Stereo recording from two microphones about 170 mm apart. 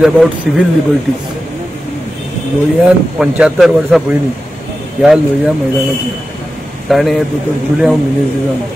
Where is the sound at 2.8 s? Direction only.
5° right (ahead or behind).